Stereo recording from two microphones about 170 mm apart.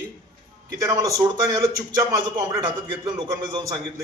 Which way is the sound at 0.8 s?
20° right (ahead or behind).